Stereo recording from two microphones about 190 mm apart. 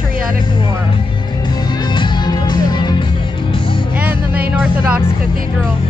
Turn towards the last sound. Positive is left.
turn(degrees=-5)  # may be behind; listen again after turning